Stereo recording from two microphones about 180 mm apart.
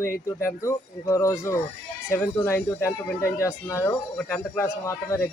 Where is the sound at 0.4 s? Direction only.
15° left (ahead or behind).